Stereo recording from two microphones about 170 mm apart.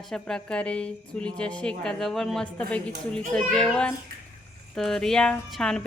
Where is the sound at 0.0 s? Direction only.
5° left (ahead or behind).